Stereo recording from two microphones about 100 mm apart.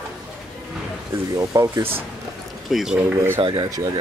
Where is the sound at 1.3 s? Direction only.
35° right (ahead or behind).